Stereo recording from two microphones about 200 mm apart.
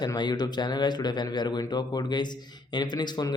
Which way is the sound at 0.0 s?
20° left (ahead or behind).